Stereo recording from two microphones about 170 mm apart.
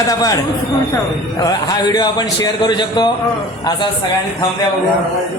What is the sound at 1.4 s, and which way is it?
A man's voice, 25° left (ahead or behind).